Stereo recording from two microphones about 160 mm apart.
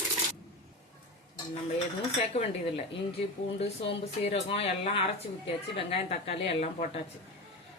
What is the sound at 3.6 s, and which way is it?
Speech, 40° left (ahead or behind).